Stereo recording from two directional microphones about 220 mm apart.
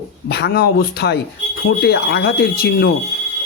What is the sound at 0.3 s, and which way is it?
A man's voice, 45° left (ahead or behind).